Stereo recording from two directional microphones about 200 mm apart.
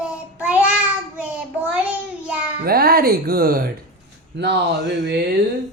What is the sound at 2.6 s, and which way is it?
Speech, 50° right (ahead or behind).